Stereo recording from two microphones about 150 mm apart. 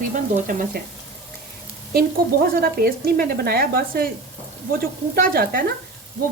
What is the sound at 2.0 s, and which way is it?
Speech, 80° right.